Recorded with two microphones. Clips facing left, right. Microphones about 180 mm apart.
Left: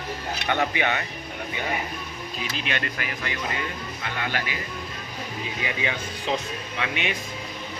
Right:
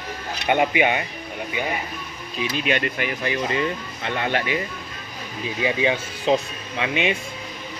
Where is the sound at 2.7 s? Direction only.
20° right (ahead or behind).